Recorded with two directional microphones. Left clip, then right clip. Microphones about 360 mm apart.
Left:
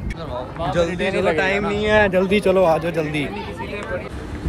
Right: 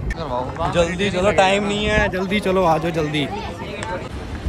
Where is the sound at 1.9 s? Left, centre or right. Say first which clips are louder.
Left 6 dB; centre.